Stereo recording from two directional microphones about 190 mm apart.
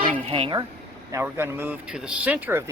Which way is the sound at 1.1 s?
10° right (ahead or behind).